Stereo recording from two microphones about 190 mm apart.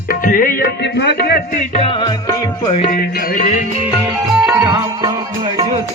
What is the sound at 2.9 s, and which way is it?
Music, 45° left (ahead or behind).